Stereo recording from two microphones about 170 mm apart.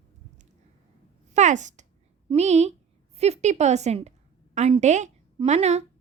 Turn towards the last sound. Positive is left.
turn(degrees=-40)  # may be behind; listen again after turning